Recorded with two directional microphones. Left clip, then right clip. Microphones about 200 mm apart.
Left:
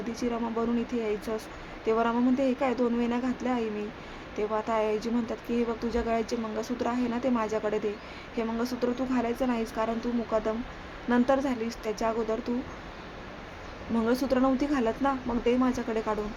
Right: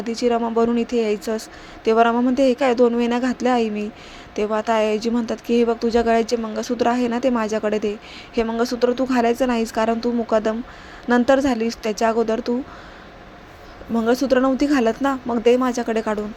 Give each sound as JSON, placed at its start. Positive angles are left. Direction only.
{"t": 0.0, "sound": "speech", "side_deg": -25}
{"t": 13.9, "sound": "speech", "side_deg": -20}